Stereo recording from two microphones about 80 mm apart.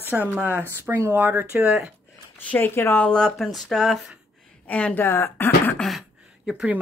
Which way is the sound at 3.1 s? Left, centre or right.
Centre.